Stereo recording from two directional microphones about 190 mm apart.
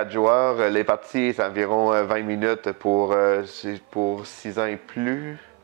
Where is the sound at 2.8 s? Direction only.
30° right (ahead or behind).